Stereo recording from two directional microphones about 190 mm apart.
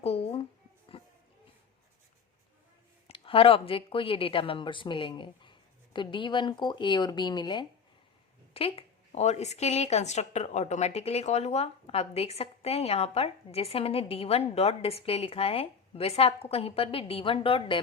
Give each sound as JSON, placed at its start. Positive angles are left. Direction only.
{"t": 0.0, "sound": "a sound", "side_deg": 30}
{"t": 0.9, "sound": "music", "side_deg": 30}
{"t": 3.1, "sound": "speech", "side_deg": 30}